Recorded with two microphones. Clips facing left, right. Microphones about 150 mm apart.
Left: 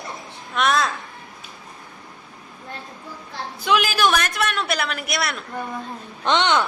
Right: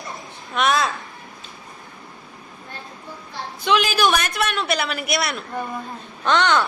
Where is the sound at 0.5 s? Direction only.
Centre (ahead or behind).